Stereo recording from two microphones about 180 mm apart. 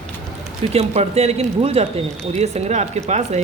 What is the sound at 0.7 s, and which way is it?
A man's voice, 35° right (ahead or behind).